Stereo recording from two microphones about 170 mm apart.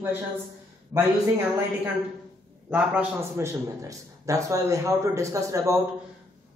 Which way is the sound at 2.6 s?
10° right (ahead or behind).